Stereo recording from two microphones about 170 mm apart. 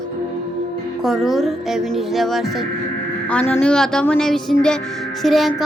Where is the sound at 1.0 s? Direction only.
Centre (ahead or behind).